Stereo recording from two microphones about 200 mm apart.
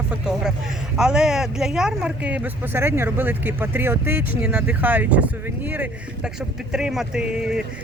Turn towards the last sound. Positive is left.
turn(degrees=-5)  # may be behind; listen again after turning